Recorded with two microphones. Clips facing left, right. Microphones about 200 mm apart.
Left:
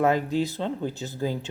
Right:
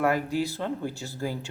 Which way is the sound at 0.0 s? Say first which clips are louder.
Left 3 dB; 20° left (ahead or behind).